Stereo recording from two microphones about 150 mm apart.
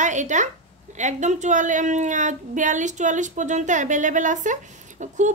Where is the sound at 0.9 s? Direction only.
55° right (ahead or behind).